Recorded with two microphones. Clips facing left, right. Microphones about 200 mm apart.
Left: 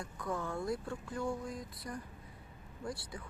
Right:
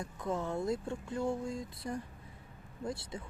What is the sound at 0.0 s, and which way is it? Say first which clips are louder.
Speech: right 3 dB; 25° right (ahead or behind).